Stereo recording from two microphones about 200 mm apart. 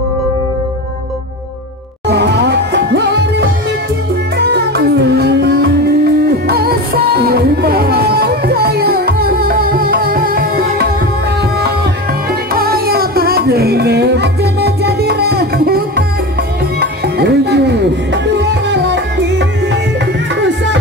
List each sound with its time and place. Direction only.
2.0 s music: 55° right (ahead or behind)
12.3 s music: 50° right (ahead or behind)
16.8 s music: 55° right (ahead or behind)